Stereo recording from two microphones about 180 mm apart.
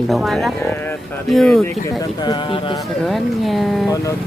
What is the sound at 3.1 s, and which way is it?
Speech, centre (ahead or behind).